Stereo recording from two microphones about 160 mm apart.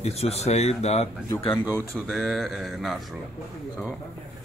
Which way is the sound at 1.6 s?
15° right (ahead or behind).